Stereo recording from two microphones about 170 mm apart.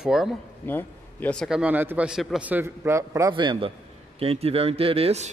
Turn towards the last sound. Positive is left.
turn(degrees=-35)  # may be behind; listen again after turning